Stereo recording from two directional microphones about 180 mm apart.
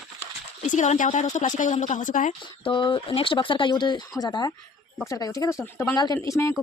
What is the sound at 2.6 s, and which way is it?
Speech, 25° left (ahead or behind).